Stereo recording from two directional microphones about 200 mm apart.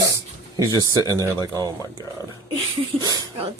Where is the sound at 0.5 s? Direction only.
15° right (ahead or behind).